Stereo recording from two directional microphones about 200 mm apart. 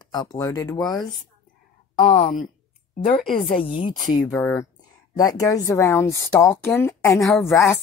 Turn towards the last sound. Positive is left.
turn(degrees=10)  # may be behind; listen again after turning